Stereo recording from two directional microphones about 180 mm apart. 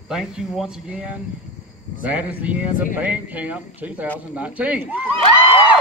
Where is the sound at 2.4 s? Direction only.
10° right (ahead or behind).